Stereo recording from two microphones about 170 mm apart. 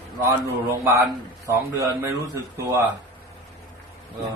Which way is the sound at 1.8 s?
15° right (ahead or behind).